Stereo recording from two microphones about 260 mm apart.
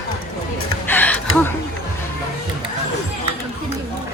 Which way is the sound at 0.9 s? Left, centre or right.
Centre.